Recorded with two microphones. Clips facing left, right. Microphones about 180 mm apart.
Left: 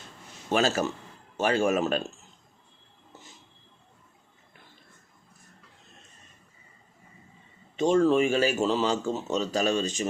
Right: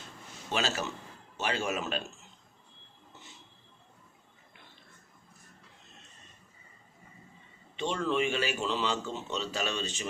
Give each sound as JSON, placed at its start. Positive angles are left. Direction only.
{"t": 0.5, "sound": "speech", "side_deg": 45}
{"t": 7.8, "sound": "speech", "side_deg": 45}